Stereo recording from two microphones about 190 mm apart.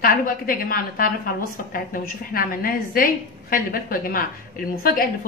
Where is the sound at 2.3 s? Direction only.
50° left (ahead or behind).